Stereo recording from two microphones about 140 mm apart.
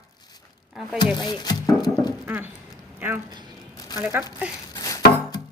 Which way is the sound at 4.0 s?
15° right (ahead or behind).